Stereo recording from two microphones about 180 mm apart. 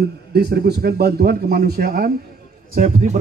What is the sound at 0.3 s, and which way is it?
A man's voice, 60° right (ahead or behind).